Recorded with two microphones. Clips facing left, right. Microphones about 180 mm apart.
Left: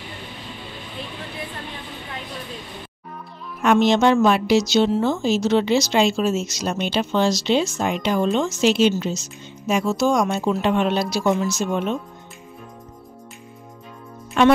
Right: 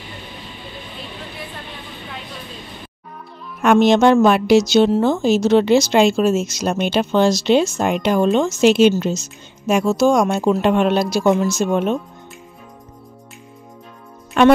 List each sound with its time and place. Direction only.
3.6 s a woman's voice: 55° right (ahead or behind)
10.2 s a woman's voice: 60° right (ahead or behind)
14.4 s speech: 55° right (ahead or behind)